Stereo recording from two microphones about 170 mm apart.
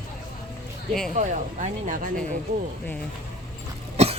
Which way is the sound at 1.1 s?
45° right (ahead or behind).